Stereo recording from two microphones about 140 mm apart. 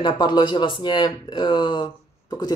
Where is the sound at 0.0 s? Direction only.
30° left (ahead or behind).